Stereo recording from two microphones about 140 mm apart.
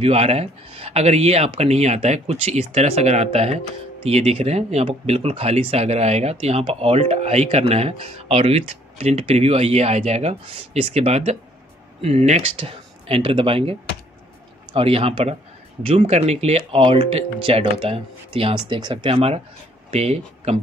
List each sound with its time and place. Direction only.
0.0 s speech: 45° right (ahead or behind)
12.5 s speech: 40° right (ahead or behind)
19.1 s speech: 45° right (ahead or behind)